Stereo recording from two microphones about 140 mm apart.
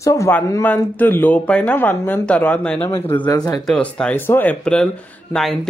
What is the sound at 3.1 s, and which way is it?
Speech, 30° left (ahead or behind).